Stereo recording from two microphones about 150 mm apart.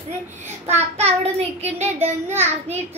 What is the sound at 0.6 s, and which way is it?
Child singing, 45° right (ahead or behind).